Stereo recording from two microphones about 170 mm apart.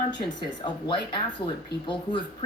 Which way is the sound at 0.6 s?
30° left (ahead or behind).